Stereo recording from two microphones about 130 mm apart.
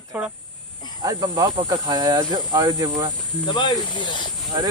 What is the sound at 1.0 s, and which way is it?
Speech, 35° right (ahead or behind).